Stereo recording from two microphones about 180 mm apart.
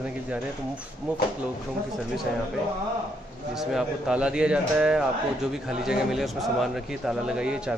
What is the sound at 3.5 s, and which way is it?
Speech, 5° right (ahead or behind).